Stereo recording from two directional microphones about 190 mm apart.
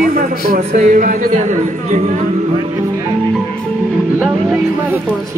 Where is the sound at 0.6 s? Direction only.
35° right (ahead or behind).